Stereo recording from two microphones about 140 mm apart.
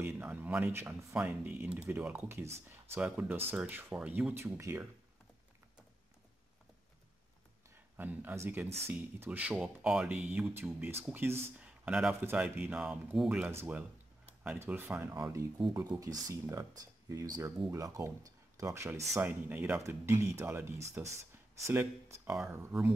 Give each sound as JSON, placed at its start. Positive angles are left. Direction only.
{"t": 0.0, "sound": "speech", "side_deg": -15}
{"t": 8.0, "sound": "speech", "side_deg": -15}